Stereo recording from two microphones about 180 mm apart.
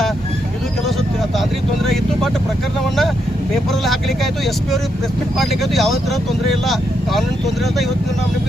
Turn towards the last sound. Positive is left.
turn(degrees=0)  # may be behind; listen again after turning